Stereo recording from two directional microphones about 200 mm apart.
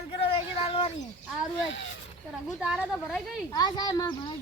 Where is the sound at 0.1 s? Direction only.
25° left (ahead or behind).